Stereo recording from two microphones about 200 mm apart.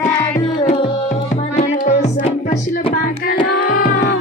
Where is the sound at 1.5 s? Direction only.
35° left (ahead or behind).